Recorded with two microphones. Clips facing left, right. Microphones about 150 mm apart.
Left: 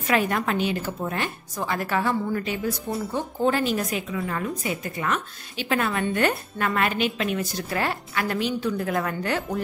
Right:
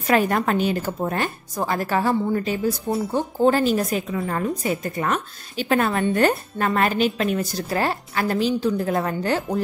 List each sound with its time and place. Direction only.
0.0 s a woman's voice: 40° right (ahead or behind)